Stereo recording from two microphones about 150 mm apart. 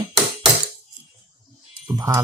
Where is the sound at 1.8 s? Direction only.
20° right (ahead or behind).